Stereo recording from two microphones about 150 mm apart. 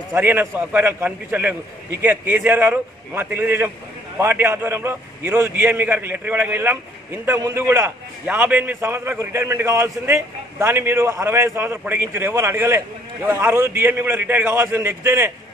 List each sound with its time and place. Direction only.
0.1 s a man's voice: 10° right (ahead or behind)